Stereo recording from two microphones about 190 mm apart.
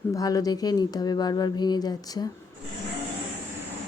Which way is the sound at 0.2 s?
20° left (ahead or behind).